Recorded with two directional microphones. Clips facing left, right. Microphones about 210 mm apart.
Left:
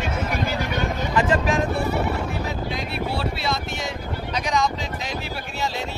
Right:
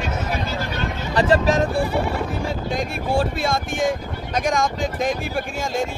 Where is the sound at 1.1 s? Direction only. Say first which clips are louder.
Right 4 dB; 35° right (ahead or behind).